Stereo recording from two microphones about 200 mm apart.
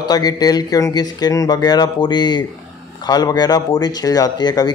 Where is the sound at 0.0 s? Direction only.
20° left (ahead or behind).